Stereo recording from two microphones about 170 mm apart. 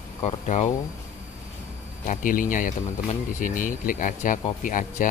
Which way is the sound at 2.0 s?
50° left (ahead or behind).